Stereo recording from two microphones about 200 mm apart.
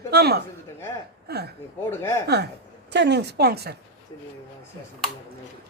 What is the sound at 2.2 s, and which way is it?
A woman's voice, 55° right (ahead or behind).